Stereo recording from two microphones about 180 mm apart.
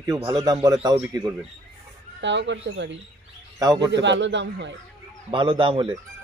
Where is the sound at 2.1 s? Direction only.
85° right.